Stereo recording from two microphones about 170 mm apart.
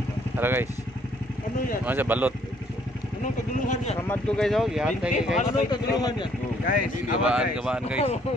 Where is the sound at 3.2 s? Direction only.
45° left (ahead or behind).